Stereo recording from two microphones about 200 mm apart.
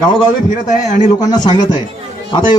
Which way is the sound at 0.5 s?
40° left (ahead or behind).